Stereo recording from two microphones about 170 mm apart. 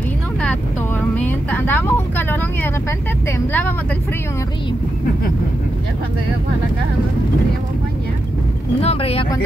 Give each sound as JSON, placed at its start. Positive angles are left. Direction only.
{"t": 1.1, "sound": "vehicle", "side_deg": 10}
{"t": 3.3, "sound": "speech", "side_deg": 15}
{"t": 8.8, "sound": "speech", "side_deg": 35}